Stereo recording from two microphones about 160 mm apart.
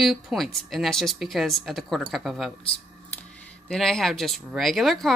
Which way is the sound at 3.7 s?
5° left (ahead or behind).